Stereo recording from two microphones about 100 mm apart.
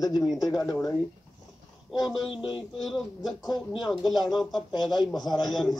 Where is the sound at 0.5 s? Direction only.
40° left (ahead or behind).